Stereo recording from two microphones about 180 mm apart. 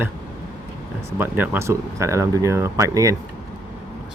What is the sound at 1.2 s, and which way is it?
Speech, 15° right (ahead or behind).